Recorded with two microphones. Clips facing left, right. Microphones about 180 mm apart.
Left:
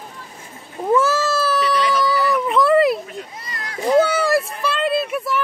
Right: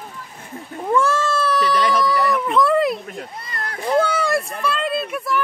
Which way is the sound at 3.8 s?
5° left (ahead or behind).